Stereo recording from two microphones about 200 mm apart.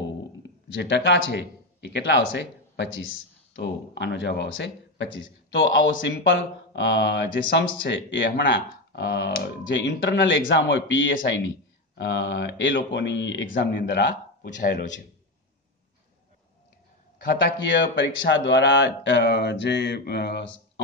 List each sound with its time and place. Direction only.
0.7 s speech: 60° left (ahead or behind)
17.2 s speech: 60° left (ahead or behind)